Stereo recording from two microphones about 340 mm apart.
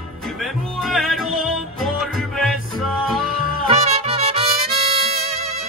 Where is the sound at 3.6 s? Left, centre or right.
Centre.